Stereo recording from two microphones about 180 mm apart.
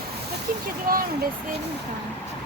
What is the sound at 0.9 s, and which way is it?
Speech, 55° right (ahead or behind).